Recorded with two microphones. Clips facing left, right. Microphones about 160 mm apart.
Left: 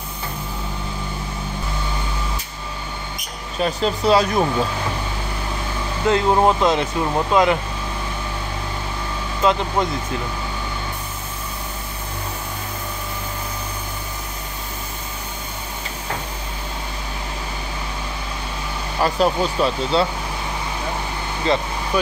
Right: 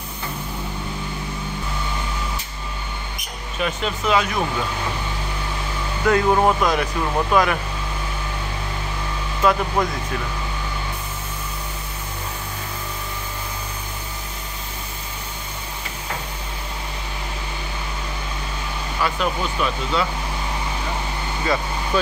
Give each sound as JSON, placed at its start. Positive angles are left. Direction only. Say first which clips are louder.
{"t": 3.5, "sound": "speech", "louder": "left 4 dB", "side_deg": 35}
{"t": 6.0, "sound": "speech", "louder": "left 1 dB", "side_deg": 25}
{"t": 9.4, "sound": "speech", "louder": "even", "side_deg": 20}
{"t": 18.9, "sound": "speech", "louder": "left 5 dB", "side_deg": 35}